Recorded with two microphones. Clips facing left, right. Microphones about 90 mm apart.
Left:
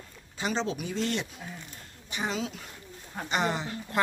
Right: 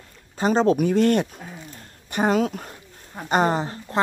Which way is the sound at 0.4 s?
45° right (ahead or behind).